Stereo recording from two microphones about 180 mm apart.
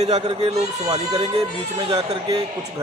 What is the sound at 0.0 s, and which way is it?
Speech, 35° right (ahead or behind).